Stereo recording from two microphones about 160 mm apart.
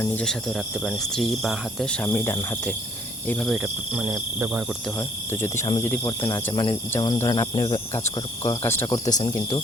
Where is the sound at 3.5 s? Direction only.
5° right (ahead or behind).